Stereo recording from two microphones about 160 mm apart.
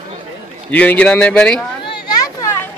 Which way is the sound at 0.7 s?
10° left (ahead or behind).